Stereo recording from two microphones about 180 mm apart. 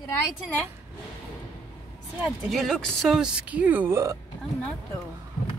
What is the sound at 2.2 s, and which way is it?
Speech, centre (ahead or behind).